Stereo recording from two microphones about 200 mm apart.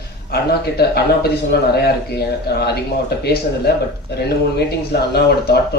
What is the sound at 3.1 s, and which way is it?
A man's voice, 55° left (ahead or behind).